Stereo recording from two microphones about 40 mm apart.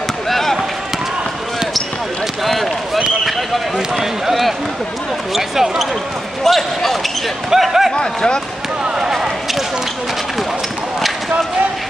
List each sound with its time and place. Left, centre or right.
0.3 s basketball bounce: centre
2.4 s a sound: centre
5.3 s speech: centre
6.4 s basketball bounce: centre
7.5 s a sound: centre
7.9 s speech: left